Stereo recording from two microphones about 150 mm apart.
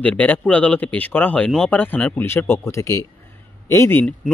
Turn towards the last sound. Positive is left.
turn(degrees=20)  # may be behind; listen again after turning